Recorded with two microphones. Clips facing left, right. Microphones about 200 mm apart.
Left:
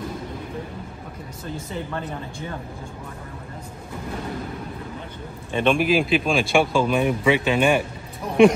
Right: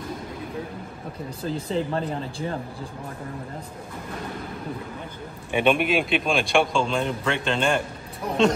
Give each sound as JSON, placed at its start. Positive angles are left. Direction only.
{"t": 1.4, "sound": "speech", "side_deg": -30}
{"t": 5.5, "sound": "speech", "side_deg": -5}